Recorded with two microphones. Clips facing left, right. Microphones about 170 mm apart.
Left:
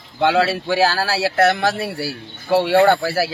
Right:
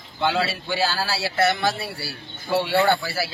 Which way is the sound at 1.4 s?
70° left (ahead or behind).